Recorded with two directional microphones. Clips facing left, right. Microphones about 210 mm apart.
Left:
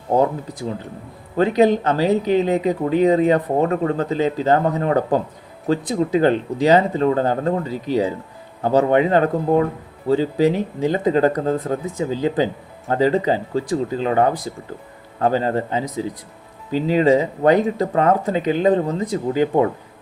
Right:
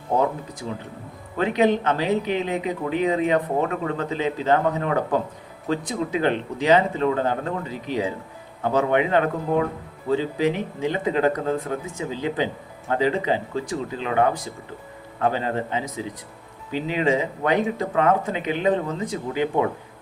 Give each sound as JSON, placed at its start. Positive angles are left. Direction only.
{"t": 1.4, "sound": "speech", "side_deg": 35}